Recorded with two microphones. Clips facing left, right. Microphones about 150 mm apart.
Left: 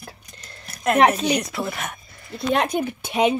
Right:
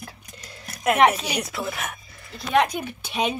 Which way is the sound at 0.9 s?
35° left (ahead or behind).